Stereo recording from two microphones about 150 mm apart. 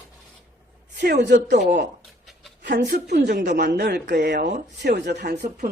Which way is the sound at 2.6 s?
90° right.